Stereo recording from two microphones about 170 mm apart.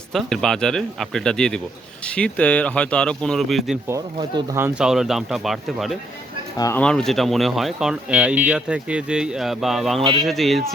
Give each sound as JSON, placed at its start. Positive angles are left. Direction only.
{"t": 0.1, "sound": "speech", "side_deg": 0}
{"t": 3.8, "sound": "speech", "side_deg": -20}
{"t": 4.5, "sound": "speech", "side_deg": -10}
{"t": 6.6, "sound": "speech", "side_deg": 15}
{"t": 6.8, "sound": "speech", "side_deg": 5}